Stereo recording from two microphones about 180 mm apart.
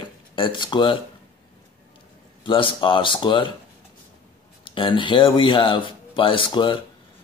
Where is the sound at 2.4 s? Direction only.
30° left (ahead or behind).